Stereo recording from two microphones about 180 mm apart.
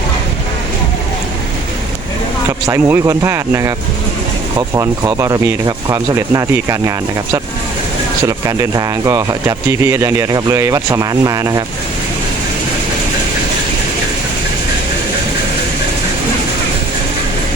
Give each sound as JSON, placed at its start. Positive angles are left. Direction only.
{"t": 2.5, "sound": "speech", "side_deg": -15}
{"t": 4.7, "sound": "speech", "side_deg": -15}
{"t": 8.3, "sound": "speech", "side_deg": -20}